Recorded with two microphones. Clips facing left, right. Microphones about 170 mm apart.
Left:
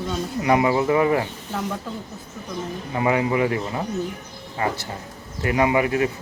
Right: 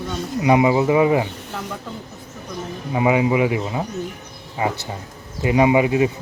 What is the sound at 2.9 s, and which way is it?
Speech, 15° right (ahead or behind).